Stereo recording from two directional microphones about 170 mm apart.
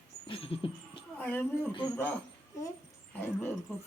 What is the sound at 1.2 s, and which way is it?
Speech, 10° left (ahead or behind).